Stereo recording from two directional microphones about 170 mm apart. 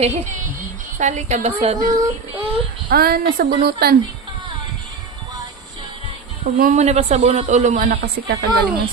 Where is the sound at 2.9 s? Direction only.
60° right (ahead or behind).